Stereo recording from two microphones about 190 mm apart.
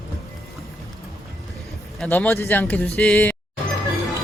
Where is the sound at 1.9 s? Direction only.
10° left (ahead or behind).